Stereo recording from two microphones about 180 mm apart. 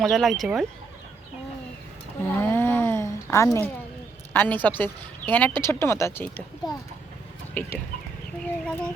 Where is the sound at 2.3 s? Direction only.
10° left (ahead or behind).